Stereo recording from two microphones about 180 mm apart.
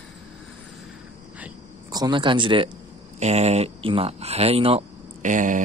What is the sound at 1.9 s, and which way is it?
Speech, 25° right (ahead or behind).